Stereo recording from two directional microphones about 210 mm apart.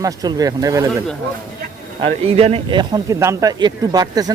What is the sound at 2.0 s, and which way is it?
Speech, 25° right (ahead or behind).